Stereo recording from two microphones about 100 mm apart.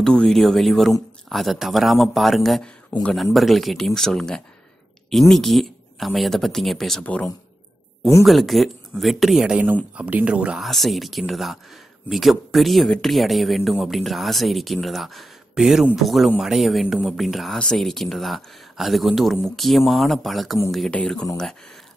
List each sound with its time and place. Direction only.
0.0 s speech: 5° left (ahead or behind)
2.9 s speech: 50° left (ahead or behind)
3.3 s speech: centre (ahead or behind)
7.0 s speech: 10° left (ahead or behind)
8.2 s speech: centre (ahead or behind)